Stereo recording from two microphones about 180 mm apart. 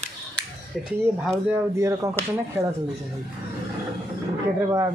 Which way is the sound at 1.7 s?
15° right (ahead or behind).